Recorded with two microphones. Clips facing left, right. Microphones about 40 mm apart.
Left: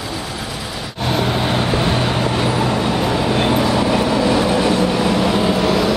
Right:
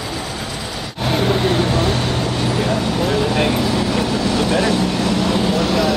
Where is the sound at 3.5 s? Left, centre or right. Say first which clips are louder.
Left 3 dB; centre.